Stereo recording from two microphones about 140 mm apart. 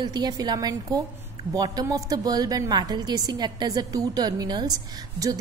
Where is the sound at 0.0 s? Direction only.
30° right (ahead or behind).